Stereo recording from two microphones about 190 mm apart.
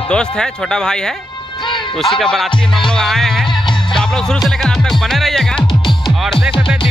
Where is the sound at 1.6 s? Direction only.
25° left (ahead or behind).